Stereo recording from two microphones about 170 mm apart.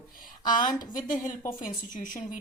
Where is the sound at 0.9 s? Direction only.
50° left (ahead or behind).